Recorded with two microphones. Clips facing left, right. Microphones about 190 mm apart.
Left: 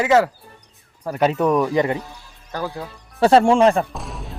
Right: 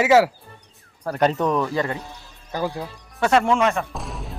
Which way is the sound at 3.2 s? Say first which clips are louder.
Left 5 dB; 30° left (ahead or behind).